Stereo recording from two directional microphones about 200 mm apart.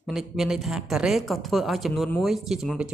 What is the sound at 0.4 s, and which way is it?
Speech, centre (ahead or behind).